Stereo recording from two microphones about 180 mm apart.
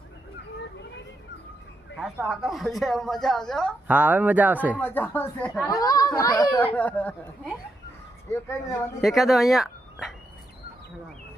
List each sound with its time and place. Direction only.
2.0 s speech: centre (ahead or behind)
3.8 s speech: 10° right (ahead or behind)
4.8 s speech: 10° left (ahead or behind)
5.6 s speech: 20° left (ahead or behind)
6.7 s speech: 10° left (ahead or behind)
8.3 s speech: 15° left (ahead or behind)
9.0 s speech: centre (ahead or behind)